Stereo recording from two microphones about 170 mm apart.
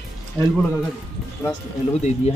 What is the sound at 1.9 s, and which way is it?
Speech, 40° left (ahead or behind).